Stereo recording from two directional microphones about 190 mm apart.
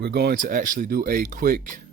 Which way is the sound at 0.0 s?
55° right (ahead or behind).